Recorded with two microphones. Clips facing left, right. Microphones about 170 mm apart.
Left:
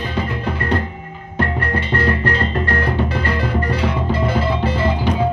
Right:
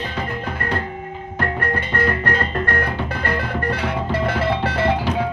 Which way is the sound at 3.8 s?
65° right (ahead or behind).